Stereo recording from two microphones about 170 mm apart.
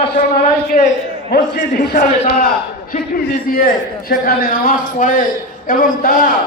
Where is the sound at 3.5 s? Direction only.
60° left (ahead or behind).